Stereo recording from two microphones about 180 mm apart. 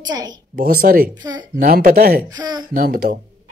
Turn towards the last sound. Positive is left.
turn(degrees=-55)  # may be behind; listen again after turning